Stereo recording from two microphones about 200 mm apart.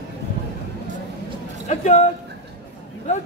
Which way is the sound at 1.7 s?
35° left (ahead or behind).